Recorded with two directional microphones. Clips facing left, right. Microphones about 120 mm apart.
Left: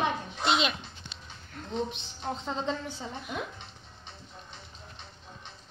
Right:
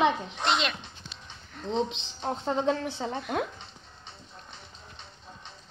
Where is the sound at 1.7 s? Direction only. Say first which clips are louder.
Right 4 dB; 90° right.